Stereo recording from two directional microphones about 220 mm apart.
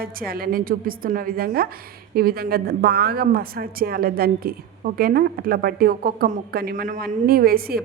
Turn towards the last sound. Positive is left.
turn(degrees=-45)  # may be behind; listen again after turning